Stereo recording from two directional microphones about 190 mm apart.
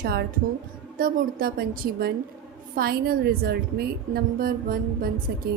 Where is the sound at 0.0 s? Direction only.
55° right (ahead or behind).